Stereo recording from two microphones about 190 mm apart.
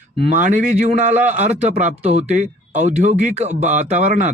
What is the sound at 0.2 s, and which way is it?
A man's voice, 40° right (ahead or behind).